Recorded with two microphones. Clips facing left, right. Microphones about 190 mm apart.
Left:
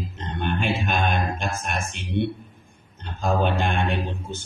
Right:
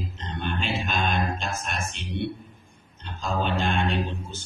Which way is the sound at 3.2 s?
55° left (ahead or behind).